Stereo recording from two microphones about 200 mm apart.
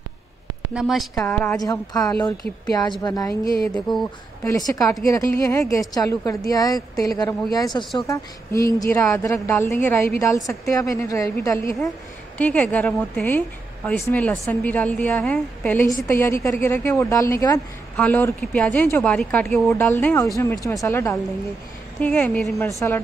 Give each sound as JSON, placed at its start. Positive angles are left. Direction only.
{"t": 0.7, "sound": "a sound", "side_deg": 0}
{"t": 1.1, "sound": "speech", "side_deg": 10}
{"t": 2.1, "sound": "speech", "side_deg": 5}
{"t": 3.0, "sound": "a woman's voice", "side_deg": 20}
{"t": 3.6, "sound": "a sound", "side_deg": 5}
{"t": 5.0, "sound": "a woman's voice", "side_deg": 15}